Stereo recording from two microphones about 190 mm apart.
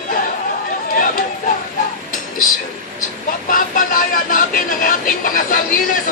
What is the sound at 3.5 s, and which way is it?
Speech, 45° left (ahead or behind).